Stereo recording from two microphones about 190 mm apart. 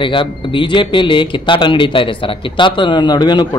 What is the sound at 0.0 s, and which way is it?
Speech, 25° left (ahead or behind).